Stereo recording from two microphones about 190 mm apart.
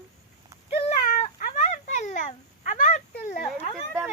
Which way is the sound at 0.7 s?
35° left (ahead or behind).